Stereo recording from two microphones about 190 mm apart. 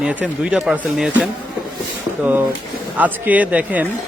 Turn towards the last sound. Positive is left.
turn(degrees=-10)  # may be behind; listen again after turning